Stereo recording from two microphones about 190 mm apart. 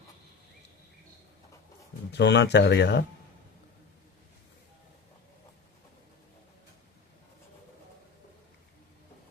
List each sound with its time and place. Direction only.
2.1 s speech: 65° left (ahead or behind)